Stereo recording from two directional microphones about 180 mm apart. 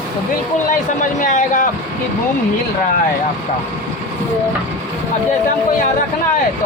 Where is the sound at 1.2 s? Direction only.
45° left (ahead or behind).